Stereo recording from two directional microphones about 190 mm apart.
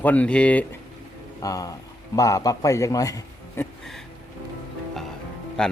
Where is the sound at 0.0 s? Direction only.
10° left (ahead or behind).